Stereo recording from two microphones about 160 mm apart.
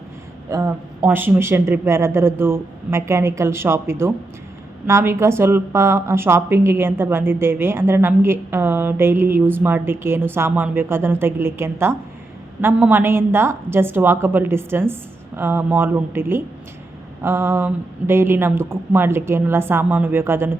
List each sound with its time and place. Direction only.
0.5 s a woman's voice: 15° right (ahead or behind)